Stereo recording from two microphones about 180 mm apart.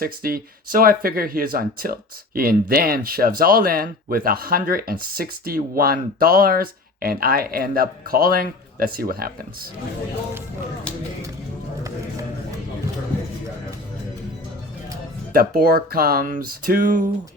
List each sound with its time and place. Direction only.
0.0 s speech: 55° right (ahead or behind)
15.3 s speech: 55° right (ahead or behind)